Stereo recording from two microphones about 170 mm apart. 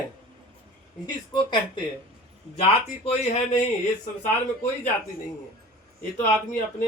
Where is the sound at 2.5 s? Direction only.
35° left (ahead or behind).